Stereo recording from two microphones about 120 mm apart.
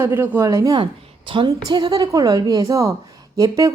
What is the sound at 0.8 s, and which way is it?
A woman's voice, 45° right (ahead or behind).